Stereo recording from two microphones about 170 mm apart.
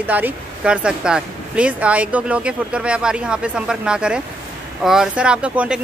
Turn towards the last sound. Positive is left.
turn(degrees=-5)  # may be behind; listen again after turning